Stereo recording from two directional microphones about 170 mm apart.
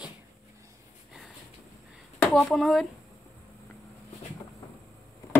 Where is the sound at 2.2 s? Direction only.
Centre (ahead or behind).